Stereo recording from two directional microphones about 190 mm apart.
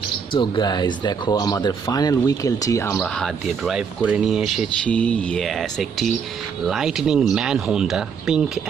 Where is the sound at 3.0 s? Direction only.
Centre (ahead or behind).